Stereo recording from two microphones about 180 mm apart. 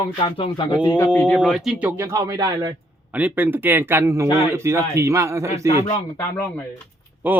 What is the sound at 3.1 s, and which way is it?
Speech, 10° right (ahead or behind).